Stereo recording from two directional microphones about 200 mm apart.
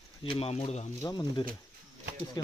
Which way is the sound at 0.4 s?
30° left (ahead or behind).